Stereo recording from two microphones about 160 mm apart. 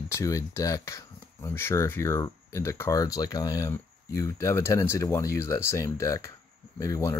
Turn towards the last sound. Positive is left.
turn(degrees=20)  # may be behind; listen again after turning